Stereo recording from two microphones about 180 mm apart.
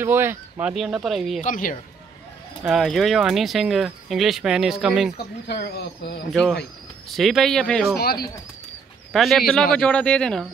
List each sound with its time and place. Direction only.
0.0 s speech: 10° right (ahead or behind)
1.4 s speech: 45° left (ahead or behind)
2.6 s speech: centre (ahead or behind)
5.1 s speech: 65° left (ahead or behind)
7.1 s speech: centre (ahead or behind)
8.0 s speech: 60° left (ahead or behind)
9.1 s speech: centre (ahead or behind)